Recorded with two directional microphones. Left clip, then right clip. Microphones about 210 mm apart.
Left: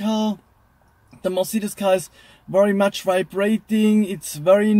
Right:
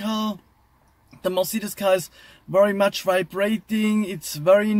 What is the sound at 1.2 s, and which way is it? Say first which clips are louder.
Speech: left 1 dB; 5° left (ahead or behind).